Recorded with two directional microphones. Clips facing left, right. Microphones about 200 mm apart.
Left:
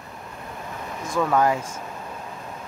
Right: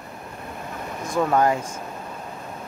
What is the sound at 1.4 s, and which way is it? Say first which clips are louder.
Speech: even; 5° left (ahead or behind).